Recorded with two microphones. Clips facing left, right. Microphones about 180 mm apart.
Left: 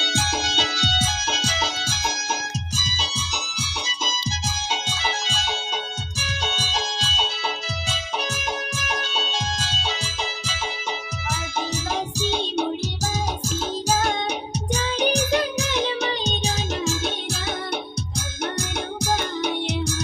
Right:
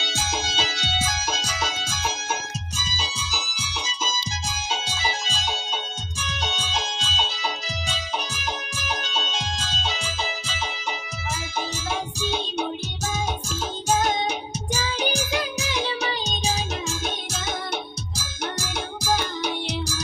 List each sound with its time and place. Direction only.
0.4 s music: 65° left (ahead or behind)
1.0 s music: 25° left (ahead or behind)
14.7 s music: 65° left (ahead or behind)
18.1 s music: 60° left (ahead or behind)